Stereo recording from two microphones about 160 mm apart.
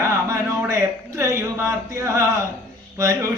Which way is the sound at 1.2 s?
20° right (ahead or behind).